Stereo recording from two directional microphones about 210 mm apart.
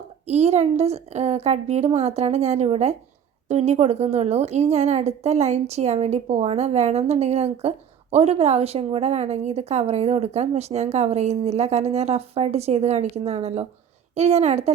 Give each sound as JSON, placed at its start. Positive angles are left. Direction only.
{"t": 0.3, "sound": "a woman's voice", "side_deg": -30}